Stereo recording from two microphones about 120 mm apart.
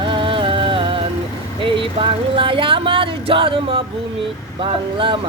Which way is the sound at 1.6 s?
45° right (ahead or behind).